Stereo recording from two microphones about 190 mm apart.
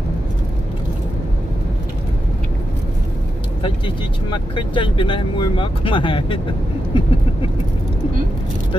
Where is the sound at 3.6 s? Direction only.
25° left (ahead or behind).